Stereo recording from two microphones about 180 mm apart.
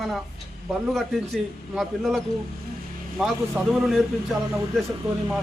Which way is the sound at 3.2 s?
Centre (ahead or behind).